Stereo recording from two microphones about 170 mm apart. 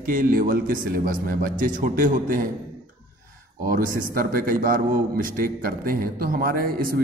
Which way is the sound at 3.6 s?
55° right (ahead or behind).